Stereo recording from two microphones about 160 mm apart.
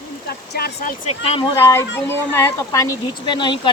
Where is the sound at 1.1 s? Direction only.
40° left (ahead or behind).